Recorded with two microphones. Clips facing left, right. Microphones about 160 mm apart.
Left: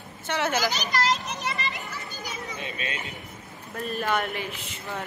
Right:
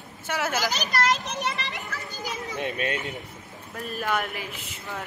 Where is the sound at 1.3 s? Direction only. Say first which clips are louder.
Right 1 dB; 75° right (ahead or behind).